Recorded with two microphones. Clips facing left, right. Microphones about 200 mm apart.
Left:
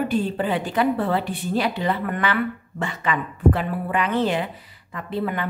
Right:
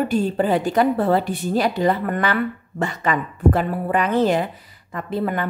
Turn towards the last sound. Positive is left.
turn(degrees=-45)  # may be behind; listen again after turning